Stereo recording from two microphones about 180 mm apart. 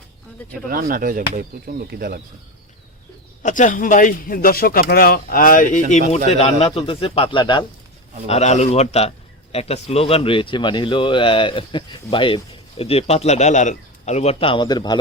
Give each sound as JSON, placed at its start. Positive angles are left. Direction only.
{"t": 0.7, "sound": "speech", "side_deg": -55}
{"t": 3.4, "sound": "a man's voice", "side_deg": 45}
{"t": 8.3, "sound": "a man's voice", "side_deg": 40}